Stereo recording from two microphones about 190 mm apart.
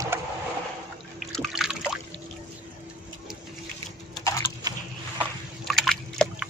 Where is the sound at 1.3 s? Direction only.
Centre (ahead or behind).